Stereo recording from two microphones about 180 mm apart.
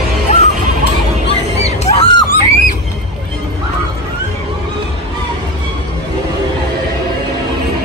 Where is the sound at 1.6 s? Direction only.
35° left (ahead or behind).